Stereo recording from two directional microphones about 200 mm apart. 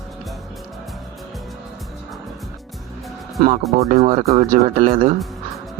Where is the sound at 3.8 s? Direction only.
35° right (ahead or behind).